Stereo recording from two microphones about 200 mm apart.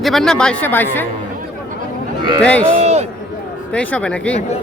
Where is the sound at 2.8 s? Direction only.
35° right (ahead or behind).